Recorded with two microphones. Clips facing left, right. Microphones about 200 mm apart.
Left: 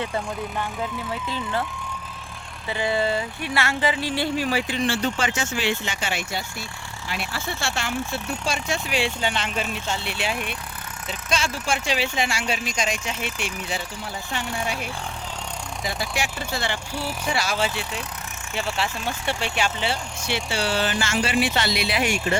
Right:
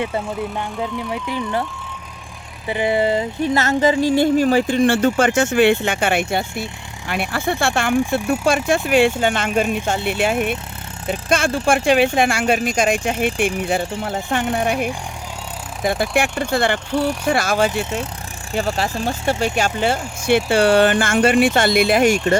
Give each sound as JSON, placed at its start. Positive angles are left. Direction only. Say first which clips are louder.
{"t": 0.0, "sound": "speech", "louder": "right 5 dB", "side_deg": -15}
{"t": 2.6, "sound": "speech", "louder": "right 6 dB", "side_deg": -15}
{"t": 3.5, "sound": "speech", "louder": "right 7 dB", "side_deg": -40}
{"t": 18.5, "sound": "speech", "louder": "right 6 dB", "side_deg": -40}